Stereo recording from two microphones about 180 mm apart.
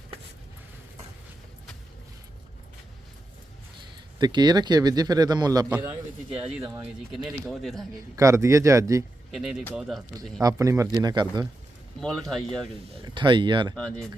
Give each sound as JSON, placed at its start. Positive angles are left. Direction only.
{"t": 4.2, "sound": "a man's voice", "side_deg": -25}
{"t": 7.2, "sound": "speech", "side_deg": 0}
{"t": 7.8, "sound": "a man's voice", "side_deg": -15}
{"t": 9.3, "sound": "speech", "side_deg": 0}
{"t": 10.4, "sound": "a man's voice", "side_deg": -20}
{"t": 11.9, "sound": "speech", "side_deg": 0}
{"t": 13.1, "sound": "a man's voice", "side_deg": -25}
{"t": 13.7, "sound": "speech", "side_deg": 5}